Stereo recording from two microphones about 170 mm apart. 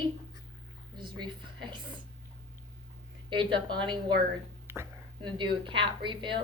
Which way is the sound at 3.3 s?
30° right (ahead or behind).